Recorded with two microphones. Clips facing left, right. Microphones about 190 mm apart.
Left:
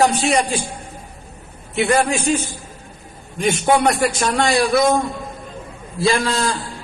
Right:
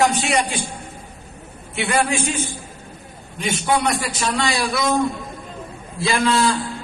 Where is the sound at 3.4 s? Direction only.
45° left (ahead or behind).